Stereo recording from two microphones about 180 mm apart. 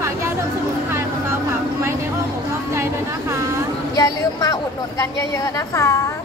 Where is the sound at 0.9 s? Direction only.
15° right (ahead or behind).